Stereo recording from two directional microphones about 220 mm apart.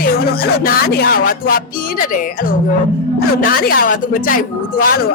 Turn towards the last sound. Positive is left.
turn(degrees=40)  # may be behind; listen again after turning